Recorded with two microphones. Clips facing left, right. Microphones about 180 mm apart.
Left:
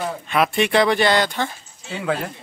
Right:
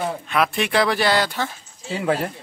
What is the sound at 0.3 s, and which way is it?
Speech, centre (ahead or behind).